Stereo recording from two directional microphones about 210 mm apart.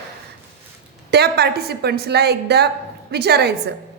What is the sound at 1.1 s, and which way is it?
A woman's voice, 50° right (ahead or behind).